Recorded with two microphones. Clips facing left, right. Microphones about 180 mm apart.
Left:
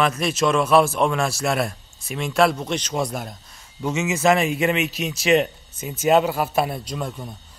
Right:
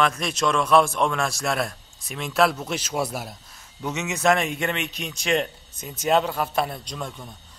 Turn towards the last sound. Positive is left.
turn(degrees=5)  # may be behind; listen again after turning